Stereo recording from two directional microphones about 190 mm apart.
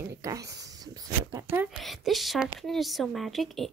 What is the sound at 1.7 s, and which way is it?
Speech, centre (ahead or behind).